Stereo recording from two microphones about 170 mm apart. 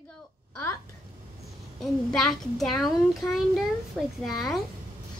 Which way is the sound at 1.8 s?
Centre (ahead or behind).